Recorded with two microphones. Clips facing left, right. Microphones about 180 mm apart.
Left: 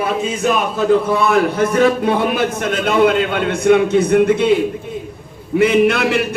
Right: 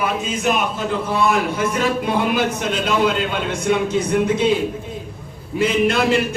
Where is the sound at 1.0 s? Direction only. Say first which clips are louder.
Left 4 dB; 60° left (ahead or behind).